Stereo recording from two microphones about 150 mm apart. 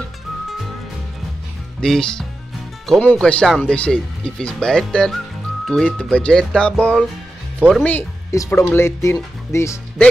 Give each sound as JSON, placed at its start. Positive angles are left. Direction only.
{"t": 1.8, "sound": "speech", "side_deg": 5}
{"t": 8.3, "sound": "speech", "side_deg": 20}